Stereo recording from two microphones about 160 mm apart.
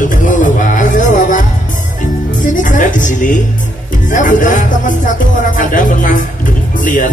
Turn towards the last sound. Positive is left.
turn(degrees=55)  # may be behind; listen again after turning